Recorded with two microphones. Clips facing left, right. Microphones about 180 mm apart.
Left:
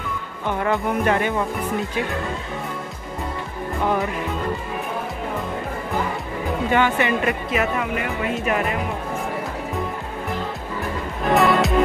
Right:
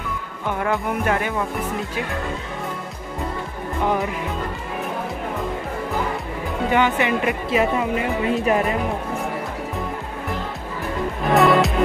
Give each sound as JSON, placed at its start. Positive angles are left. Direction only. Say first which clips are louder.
{"t": 0.5, "sound": "speech", "louder": "left 1 dB", "side_deg": 0}
{"t": 6.7, "sound": "speech", "louder": "right 1 dB", "side_deg": -15}
{"t": 7.4, "sound": "speech", "louder": "right 3 dB", "side_deg": -30}
{"t": 11.3, "sound": "music", "louder": "right 2 dB", "side_deg": 0}